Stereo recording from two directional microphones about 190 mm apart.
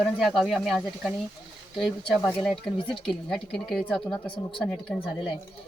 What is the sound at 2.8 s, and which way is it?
Speech, 30° left (ahead or behind).